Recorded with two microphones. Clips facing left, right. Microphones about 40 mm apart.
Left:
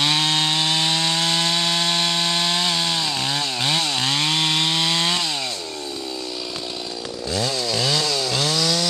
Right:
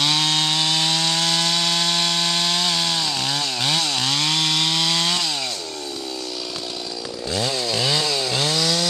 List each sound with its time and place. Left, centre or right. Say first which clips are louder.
0.0 s wood: even; centre
7.2 s chainsaw: even; centre